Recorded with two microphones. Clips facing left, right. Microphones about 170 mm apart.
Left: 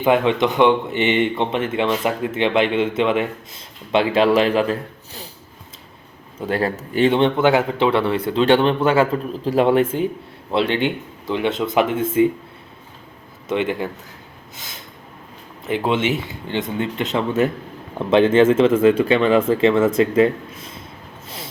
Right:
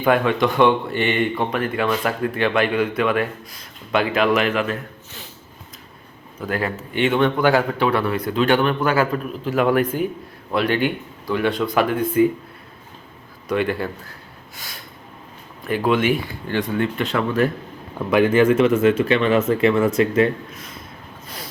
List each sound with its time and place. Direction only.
0.0 s speech: 20° left (ahead or behind)
6.4 s speech: 30° left (ahead or behind)
13.5 s speech: 20° left (ahead or behind)
14.5 s snort: 20° left (ahead or behind)
15.6 s speech: 25° left (ahead or behind)